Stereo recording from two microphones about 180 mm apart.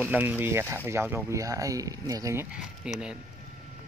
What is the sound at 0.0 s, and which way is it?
Speech, 10° right (ahead or behind).